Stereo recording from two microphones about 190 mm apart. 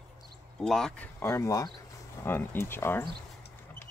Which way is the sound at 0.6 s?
Centre (ahead or behind).